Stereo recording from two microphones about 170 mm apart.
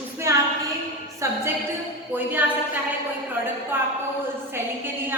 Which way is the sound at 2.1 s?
10° right (ahead or behind).